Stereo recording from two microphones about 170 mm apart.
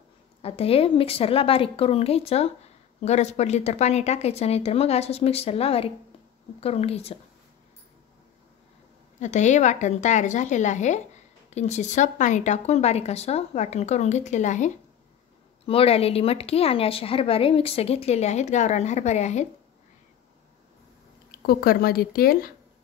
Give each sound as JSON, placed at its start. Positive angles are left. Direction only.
{"t": 0.4, "sound": "a woman's voice", "side_deg": 35}
{"t": 9.2, "sound": "a woman's voice", "side_deg": 45}
{"t": 15.6, "sound": "a woman's voice", "side_deg": 35}
{"t": 21.4, "sound": "speech", "side_deg": 65}